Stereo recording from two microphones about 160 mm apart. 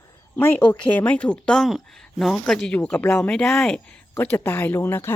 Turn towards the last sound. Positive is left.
turn(degrees=15)  # may be behind; listen again after turning